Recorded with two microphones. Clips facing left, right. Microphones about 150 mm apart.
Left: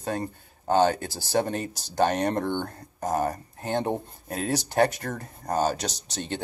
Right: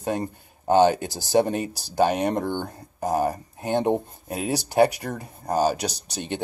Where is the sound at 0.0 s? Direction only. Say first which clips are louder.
Right 3 dB; 15° right (ahead or behind).